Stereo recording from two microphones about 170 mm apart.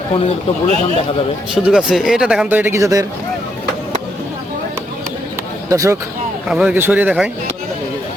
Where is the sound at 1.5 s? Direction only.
5° right (ahead or behind).